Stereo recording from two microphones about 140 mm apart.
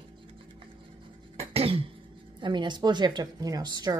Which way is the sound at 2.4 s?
35° right (ahead or behind).